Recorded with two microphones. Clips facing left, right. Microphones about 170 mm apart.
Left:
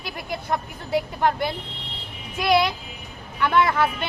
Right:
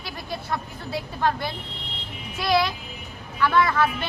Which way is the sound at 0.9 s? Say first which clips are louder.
Left 3 dB; 15° left (ahead or behind).